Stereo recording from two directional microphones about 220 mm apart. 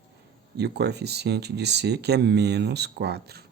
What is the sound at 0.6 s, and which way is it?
Speech, 50° right (ahead or behind).